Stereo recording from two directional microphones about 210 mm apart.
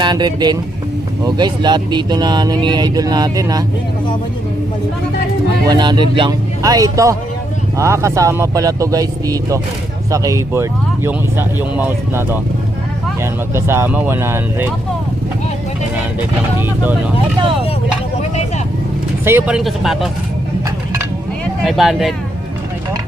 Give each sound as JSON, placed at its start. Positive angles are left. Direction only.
{"t": 0.0, "sound": "speech", "side_deg": -20}
{"t": 5.6, "sound": "speech", "side_deg": -20}
{"t": 13.5, "sound": "speech", "side_deg": -10}
{"t": 16.6, "sound": "speech", "side_deg": -10}
{"t": 19.2, "sound": "speech", "side_deg": -10}
{"t": 20.7, "sound": "a sound", "side_deg": -15}
{"t": 21.6, "sound": "speech", "side_deg": 0}